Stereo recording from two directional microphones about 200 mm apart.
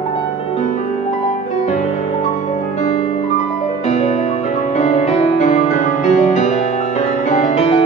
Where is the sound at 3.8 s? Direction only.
35° left (ahead or behind).